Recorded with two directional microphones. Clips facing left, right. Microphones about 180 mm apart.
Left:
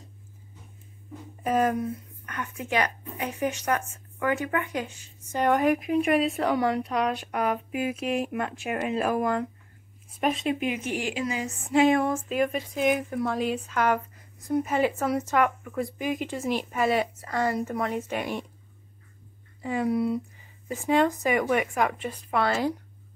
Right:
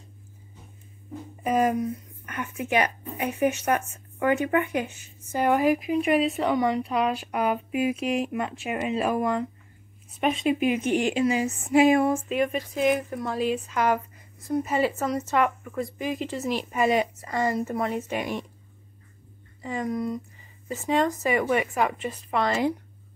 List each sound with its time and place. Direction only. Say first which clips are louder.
1.4 s speech: right 1 dB; centre (ahead or behind)
1.8 s a woman's voice: right 2 dB; 15° right (ahead or behind)
5.3 s speech: right 1 dB; 5° right (ahead or behind)
10.4 s speech: right 4 dB; 20° right (ahead or behind)
11.7 s speech: right 2 dB; 10° right (ahead or behind)
16.7 s speech: right 3 dB; 10° right (ahead or behind)
19.6 s speech: left 3 dB; 10° left (ahead or behind)